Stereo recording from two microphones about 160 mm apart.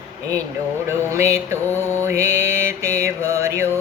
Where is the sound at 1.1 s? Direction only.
15° right (ahead or behind).